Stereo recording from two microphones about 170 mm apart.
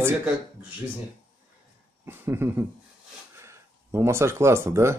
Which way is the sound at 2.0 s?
15° right (ahead or behind).